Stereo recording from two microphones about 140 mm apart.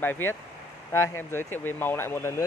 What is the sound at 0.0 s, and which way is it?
Speech, 15° left (ahead or behind).